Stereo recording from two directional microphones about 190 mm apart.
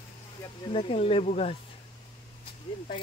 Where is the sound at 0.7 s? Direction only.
30° left (ahead or behind).